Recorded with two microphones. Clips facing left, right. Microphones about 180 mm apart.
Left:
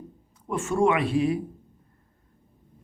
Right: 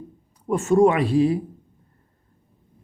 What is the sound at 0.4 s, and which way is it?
Speech, 40° right (ahead or behind).